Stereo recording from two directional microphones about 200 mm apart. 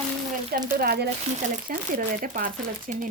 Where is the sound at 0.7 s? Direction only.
50° right (ahead or behind).